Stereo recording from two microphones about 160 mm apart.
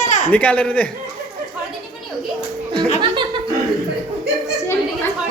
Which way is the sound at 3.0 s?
30° right (ahead or behind).